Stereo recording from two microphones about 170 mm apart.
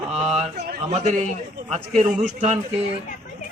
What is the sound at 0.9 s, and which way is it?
A man's voice, 45° right (ahead or behind).